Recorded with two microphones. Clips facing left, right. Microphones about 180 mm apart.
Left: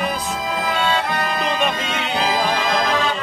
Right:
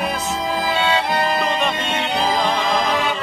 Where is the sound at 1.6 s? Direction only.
Centre (ahead or behind).